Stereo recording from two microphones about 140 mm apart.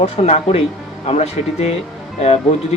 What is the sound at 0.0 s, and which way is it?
Speech, 45° left (ahead or behind).